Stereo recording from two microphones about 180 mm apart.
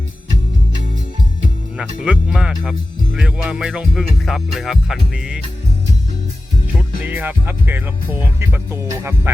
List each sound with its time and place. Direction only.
1.8 s music: 5° right (ahead or behind)
6.7 s music: 10° right (ahead or behind)